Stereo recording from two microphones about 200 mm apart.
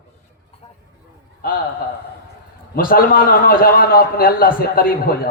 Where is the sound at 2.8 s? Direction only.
45° left (ahead or behind).